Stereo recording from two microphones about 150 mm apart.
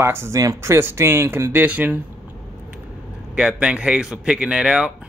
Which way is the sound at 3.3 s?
5° right (ahead or behind).